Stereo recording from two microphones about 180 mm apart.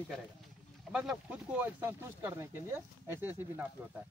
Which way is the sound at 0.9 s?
5° right (ahead or behind).